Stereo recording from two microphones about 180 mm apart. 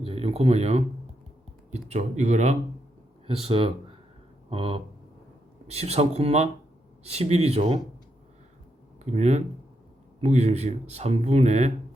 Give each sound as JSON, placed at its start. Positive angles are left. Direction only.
{"t": 0.0, "sound": "speech", "side_deg": -35}
{"t": 4.4, "sound": "a sound", "side_deg": -30}
{"t": 5.6, "sound": "speech", "side_deg": -35}
{"t": 9.0, "sound": "speech", "side_deg": -40}